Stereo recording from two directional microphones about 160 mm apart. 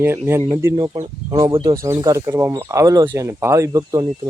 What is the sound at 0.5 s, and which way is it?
Speech, 15° right (ahead or behind).